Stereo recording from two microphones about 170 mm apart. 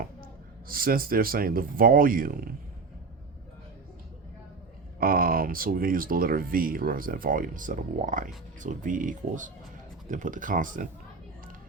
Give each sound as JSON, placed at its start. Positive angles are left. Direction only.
{"t": 0.7, "sound": "speech", "side_deg": -60}
{"t": 4.9, "sound": "speech", "side_deg": -60}